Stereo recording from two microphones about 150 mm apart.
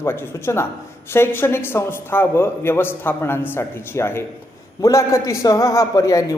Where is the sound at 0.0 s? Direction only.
15° left (ahead or behind).